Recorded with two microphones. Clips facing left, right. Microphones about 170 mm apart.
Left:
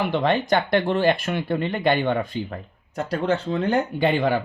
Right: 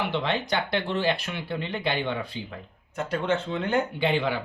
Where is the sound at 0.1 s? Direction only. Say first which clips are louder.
Left 6 dB; 45° left (ahead or behind).